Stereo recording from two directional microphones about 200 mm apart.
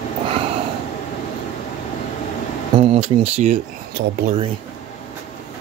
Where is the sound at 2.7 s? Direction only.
30° right (ahead or behind).